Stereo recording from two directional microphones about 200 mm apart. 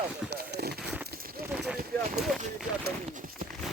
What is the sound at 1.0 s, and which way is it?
Clip-clop, 50° right (ahead or behind).